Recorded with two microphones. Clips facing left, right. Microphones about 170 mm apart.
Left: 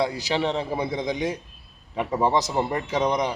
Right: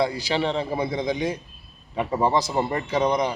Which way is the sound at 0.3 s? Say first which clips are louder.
Even; 10° left (ahead or behind).